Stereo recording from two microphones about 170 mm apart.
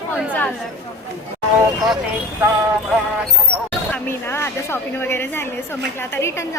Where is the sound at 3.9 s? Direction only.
15° left (ahead or behind).